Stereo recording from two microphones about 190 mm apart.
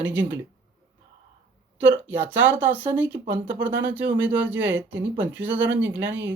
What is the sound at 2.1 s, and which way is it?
Speech, 10° right (ahead or behind).